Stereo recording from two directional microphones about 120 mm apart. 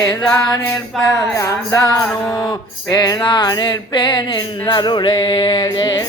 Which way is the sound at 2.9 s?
35° left (ahead or behind).